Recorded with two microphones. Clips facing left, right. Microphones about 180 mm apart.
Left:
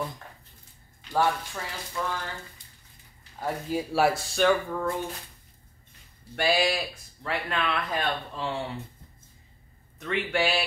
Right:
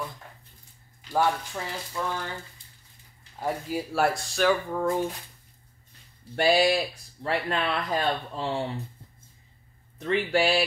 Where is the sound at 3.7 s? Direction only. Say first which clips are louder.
Left 3 dB; centre (ahead or behind).